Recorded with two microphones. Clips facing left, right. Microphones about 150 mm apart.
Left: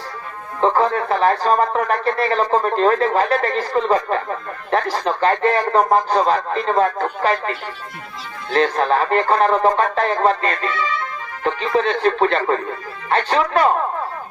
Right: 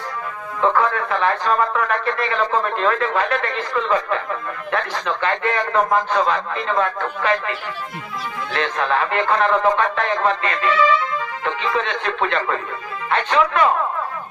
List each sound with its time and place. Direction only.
0.6 s a man's voice: 35° left (ahead or behind)
10.7 s speech: 90° right
11.4 s a man's voice: 40° left (ahead or behind)